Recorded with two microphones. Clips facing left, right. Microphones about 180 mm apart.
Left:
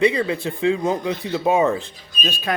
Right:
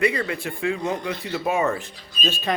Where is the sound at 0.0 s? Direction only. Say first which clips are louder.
Left 4 dB; 25° left (ahead or behind).